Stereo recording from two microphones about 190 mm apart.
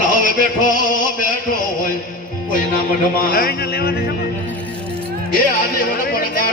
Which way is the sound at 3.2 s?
50° left (ahead or behind).